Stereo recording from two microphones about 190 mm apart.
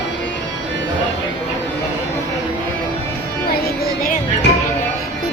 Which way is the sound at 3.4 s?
55° left (ahead or behind).